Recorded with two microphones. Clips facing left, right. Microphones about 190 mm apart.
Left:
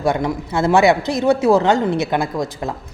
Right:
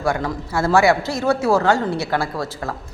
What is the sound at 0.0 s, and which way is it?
A woman's voice, 20° left (ahead or behind).